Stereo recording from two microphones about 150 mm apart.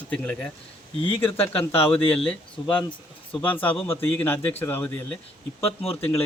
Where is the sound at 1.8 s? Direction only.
40° left (ahead or behind).